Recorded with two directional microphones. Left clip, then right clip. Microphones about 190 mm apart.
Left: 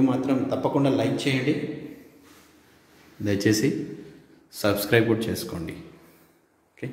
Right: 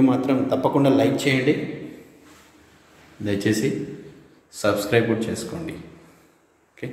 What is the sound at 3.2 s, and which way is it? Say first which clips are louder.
A man's voice: even; 20° left (ahead or behind).